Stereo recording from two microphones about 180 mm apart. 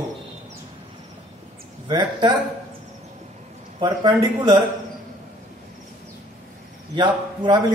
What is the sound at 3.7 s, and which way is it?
Speech, 25° right (ahead or behind).